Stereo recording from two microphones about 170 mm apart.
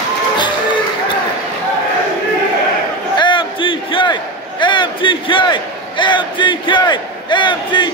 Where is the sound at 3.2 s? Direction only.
30° left (ahead or behind).